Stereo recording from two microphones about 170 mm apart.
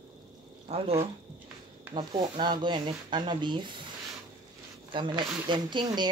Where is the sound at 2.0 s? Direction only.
25° right (ahead or behind).